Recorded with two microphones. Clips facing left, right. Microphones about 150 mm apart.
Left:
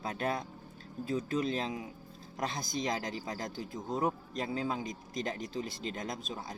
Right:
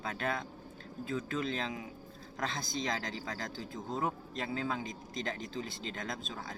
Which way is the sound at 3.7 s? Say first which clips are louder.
Left 2 dB; centre (ahead or behind).